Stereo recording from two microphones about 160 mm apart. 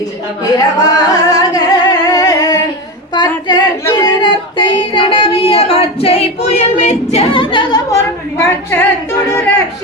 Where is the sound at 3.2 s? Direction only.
25° left (ahead or behind).